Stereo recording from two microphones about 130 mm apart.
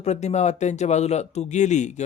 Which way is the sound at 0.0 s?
60° left (ahead or behind).